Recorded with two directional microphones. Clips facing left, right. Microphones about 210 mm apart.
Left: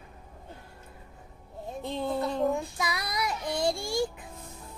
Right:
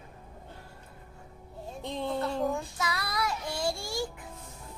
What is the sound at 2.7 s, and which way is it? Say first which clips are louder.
Child singing: left 1 dB; 15° left (ahead or behind).